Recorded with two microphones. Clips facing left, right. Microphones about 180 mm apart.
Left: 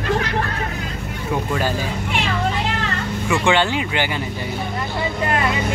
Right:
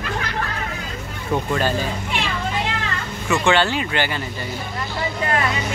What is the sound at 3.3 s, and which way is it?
Speech, 15° left (ahead or behind).